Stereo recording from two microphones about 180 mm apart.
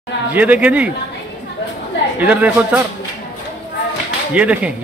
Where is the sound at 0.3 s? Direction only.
10° right (ahead or behind).